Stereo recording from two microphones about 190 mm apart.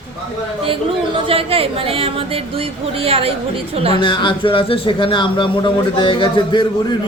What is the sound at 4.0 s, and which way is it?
A man's voice, 25° left (ahead or behind).